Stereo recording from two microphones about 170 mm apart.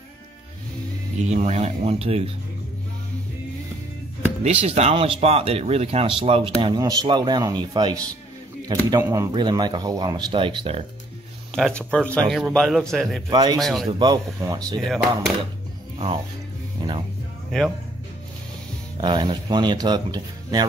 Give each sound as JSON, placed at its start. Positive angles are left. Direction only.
{"t": 1.1, "sound": "speech", "side_deg": -40}
{"t": 4.4, "sound": "speech", "side_deg": -35}
{"t": 11.5, "sound": "speech", "side_deg": 0}
{"t": 13.3, "sound": "speech", "side_deg": -25}
{"t": 13.6, "sound": "speech", "side_deg": 0}
{"t": 13.8, "sound": "speech", "side_deg": -25}
{"t": 14.8, "sound": "speech", "side_deg": 0}
{"t": 17.5, "sound": "speech", "side_deg": 0}
{"t": 18.9, "sound": "speech", "side_deg": -25}